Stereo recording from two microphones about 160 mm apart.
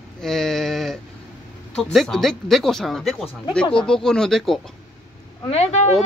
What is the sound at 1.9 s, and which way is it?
Speech, centre (ahead or behind).